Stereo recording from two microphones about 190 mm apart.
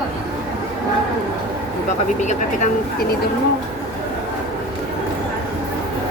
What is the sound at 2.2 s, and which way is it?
Speech, 40° left (ahead or behind).